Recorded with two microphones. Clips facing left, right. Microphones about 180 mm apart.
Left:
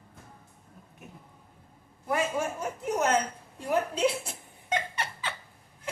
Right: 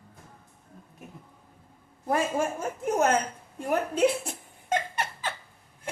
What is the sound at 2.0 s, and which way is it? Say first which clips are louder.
A man's voice: right 2 dB; 45° right (ahead or behind).